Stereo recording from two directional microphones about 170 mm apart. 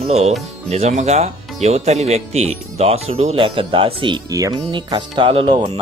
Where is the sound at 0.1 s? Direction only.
40° right (ahead or behind).